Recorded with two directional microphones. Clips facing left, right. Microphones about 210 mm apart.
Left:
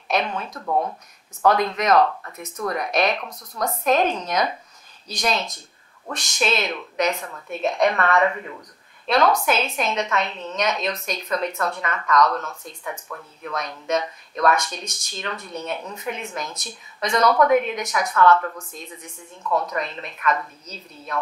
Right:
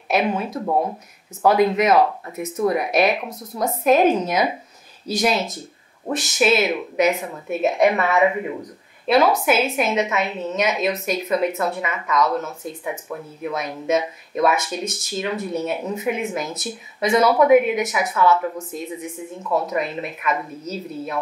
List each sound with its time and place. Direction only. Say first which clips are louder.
0.1 s speech: right 4 dB; 5° right (ahead or behind)
7.4 s a woman's voice: right 3 dB; 5° right (ahead or behind)
12.9 s speech: right 6 dB; 15° right (ahead or behind)
13.5 s speech: right 3 dB; 5° right (ahead or behind)
15.8 s speech: right 9 dB; 20° right (ahead or behind)
16.3 s speech: right 5 dB; 5° right (ahead or behind)